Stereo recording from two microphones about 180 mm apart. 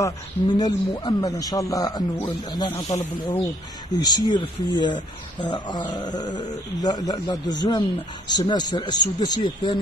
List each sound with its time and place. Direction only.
0.0 s a man's voice: 25° left (ahead or behind)
3.9 s a man's voice: 25° left (ahead or behind)